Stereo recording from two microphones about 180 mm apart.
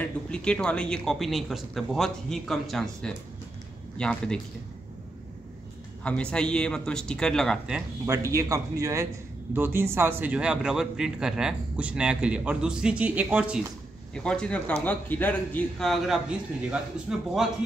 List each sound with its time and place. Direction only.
0.0 s a man's voice: 5° left (ahead or behind)
6.0 s a man's voice: 5° left (ahead or behind)
8.1 s a man's voice: 15° right (ahead or behind)
14.1 s a man's voice: 5° left (ahead or behind)